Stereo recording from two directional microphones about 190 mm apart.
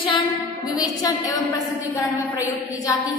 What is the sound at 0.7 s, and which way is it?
Speech, 20° left (ahead or behind).